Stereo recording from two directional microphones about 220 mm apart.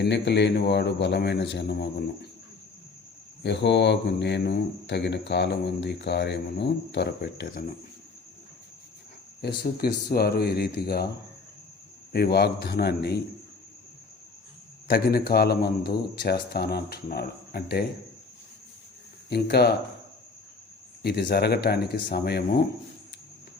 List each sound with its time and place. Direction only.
0.0 s speech: 50° left (ahead or behind)
3.4 s speech: 50° left (ahead or behind)
9.4 s speech: 45° left (ahead or behind)
12.1 s speech: 45° left (ahead or behind)
14.8 s speech: 45° left (ahead or behind)
19.3 s speech: 45° left (ahead or behind)
21.0 s speech: 45° left (ahead or behind)